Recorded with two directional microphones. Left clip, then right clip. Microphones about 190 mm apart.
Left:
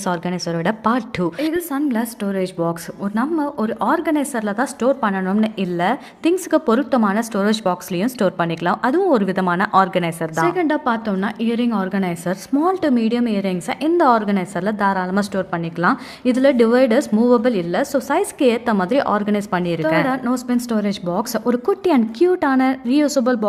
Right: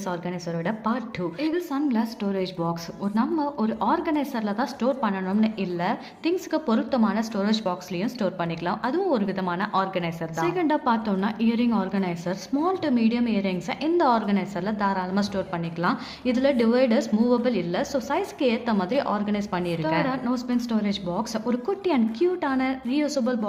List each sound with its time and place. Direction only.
0.0 s a woman's voice: 45° left (ahead or behind)
1.5 s a woman's voice: 35° left (ahead or behind)
10.3 s a woman's voice: 25° left (ahead or behind); by 23.5 s 45° left (ahead or behind)